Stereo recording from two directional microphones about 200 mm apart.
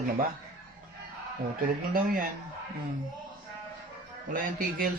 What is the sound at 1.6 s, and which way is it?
Speech, 45° right (ahead or behind).